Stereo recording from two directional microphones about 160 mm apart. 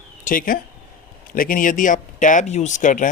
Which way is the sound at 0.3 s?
60° left (ahead or behind).